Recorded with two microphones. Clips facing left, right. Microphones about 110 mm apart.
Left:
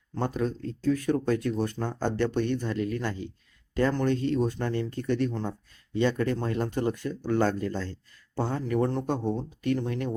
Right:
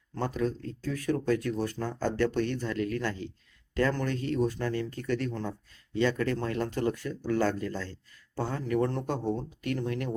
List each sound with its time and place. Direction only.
0.4 s speech: 25° left (ahead or behind)